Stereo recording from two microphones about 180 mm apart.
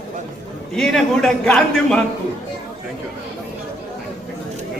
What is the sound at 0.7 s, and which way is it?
A man's voice, centre (ahead or behind).